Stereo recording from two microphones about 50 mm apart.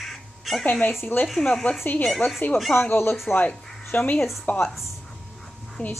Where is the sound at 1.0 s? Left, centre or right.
Left.